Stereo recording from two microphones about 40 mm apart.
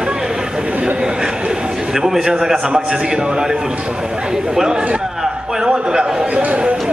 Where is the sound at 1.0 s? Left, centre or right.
Right.